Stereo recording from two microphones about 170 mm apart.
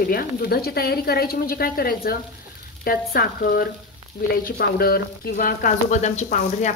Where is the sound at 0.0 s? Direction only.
60° left (ahead or behind).